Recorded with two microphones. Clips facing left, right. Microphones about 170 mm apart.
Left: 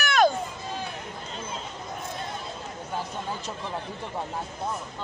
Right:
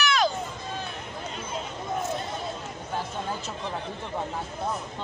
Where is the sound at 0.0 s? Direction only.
55° left (ahead or behind).